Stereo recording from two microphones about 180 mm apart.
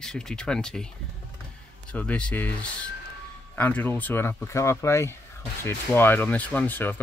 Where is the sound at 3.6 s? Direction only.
10° left (ahead or behind).